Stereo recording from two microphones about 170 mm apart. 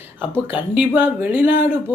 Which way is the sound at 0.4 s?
10° right (ahead or behind).